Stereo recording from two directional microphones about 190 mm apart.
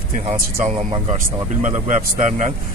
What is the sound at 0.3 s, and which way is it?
Speech, 40° right (ahead or behind).